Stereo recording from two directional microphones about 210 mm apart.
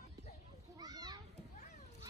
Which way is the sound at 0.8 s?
20° right (ahead or behind).